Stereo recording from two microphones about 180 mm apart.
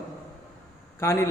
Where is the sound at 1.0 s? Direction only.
15° left (ahead or behind).